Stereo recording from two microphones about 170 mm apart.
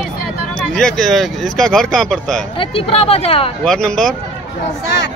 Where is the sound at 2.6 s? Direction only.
35° left (ahead or behind).